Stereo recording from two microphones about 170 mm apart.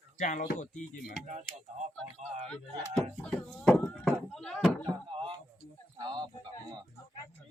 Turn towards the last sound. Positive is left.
turn(degrees=-25)  # may be behind; listen again after turning